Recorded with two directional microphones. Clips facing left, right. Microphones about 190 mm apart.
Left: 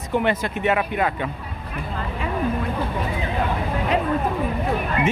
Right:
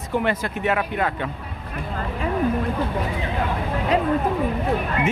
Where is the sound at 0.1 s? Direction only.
20° left (ahead or behind).